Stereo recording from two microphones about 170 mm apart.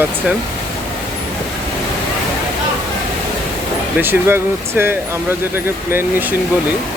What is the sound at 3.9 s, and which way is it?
Speech, 10° right (ahead or behind).